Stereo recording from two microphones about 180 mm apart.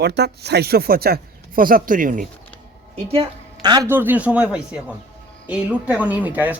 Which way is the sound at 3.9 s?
10° right (ahead or behind).